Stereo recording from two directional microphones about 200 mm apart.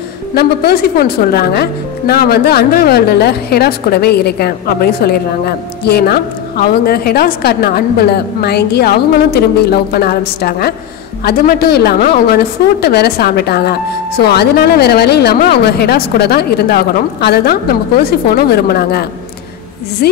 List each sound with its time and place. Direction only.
0.3 s speech: 50° left (ahead or behind)